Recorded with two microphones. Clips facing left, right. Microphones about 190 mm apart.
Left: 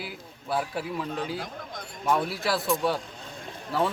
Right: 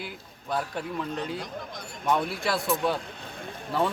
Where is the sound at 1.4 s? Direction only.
50° left (ahead or behind).